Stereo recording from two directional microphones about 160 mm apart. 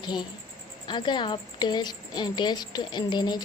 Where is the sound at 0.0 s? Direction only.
25° left (ahead or behind).